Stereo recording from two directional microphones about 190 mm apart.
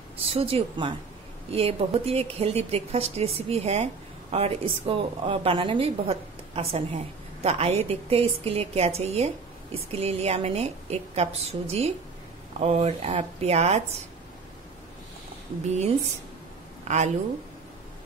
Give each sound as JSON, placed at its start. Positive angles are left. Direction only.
{"t": 0.3, "sound": "a woman's voice", "side_deg": -30}
{"t": 16.8, "sound": "a woman's voice", "side_deg": -35}